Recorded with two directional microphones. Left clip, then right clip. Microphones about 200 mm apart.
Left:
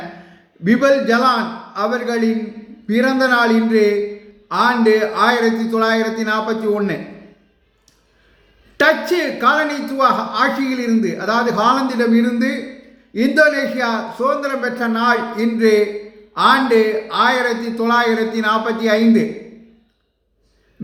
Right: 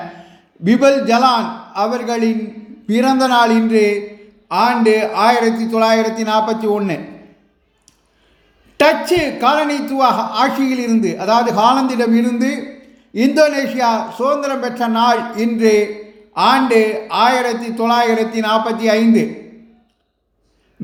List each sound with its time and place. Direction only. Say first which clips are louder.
0.6 s a woman's voice: right 2 dB; 20° right (ahead or behind)
8.8 s a woman's voice: right 2 dB; 20° right (ahead or behind)